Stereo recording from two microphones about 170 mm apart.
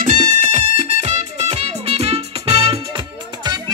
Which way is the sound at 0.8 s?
40° right (ahead or behind).